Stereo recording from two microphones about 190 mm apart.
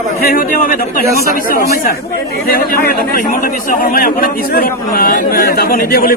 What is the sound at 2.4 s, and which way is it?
A man's voice, 50° left (ahead or behind).